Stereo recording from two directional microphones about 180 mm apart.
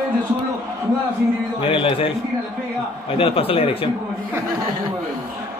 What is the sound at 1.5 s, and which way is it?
Speech, 30° left (ahead or behind).